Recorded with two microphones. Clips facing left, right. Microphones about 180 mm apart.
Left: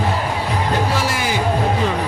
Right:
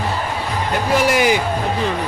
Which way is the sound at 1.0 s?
15° right (ahead or behind).